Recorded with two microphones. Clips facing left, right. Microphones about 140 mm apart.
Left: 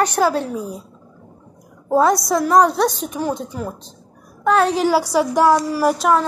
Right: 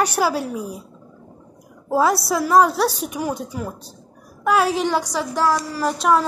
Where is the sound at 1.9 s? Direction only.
5° right (ahead or behind); by 6.0 s 15° left (ahead or behind).